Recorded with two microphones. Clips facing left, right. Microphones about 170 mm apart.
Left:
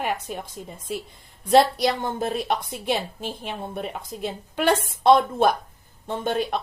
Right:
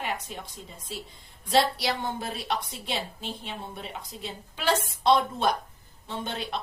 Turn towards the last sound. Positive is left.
turn(degrees=50)  # may be behind; listen again after turning